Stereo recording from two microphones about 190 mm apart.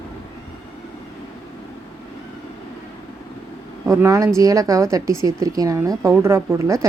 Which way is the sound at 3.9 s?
15° right (ahead or behind).